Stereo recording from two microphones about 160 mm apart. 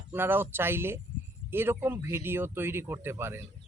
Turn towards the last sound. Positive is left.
turn(degrees=-15)  # may be behind; listen again after turning